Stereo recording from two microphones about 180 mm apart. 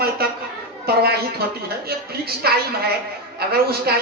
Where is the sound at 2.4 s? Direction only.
60° right (ahead or behind).